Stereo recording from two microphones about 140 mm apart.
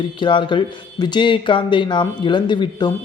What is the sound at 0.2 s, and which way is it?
Speech, 35° left (ahead or behind).